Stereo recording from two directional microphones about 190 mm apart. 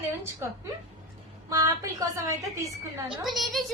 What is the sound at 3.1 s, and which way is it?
Speech, centre (ahead or behind).